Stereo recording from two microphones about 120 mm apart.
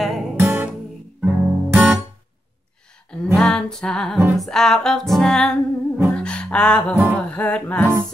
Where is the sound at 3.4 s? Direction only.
5° left (ahead or behind).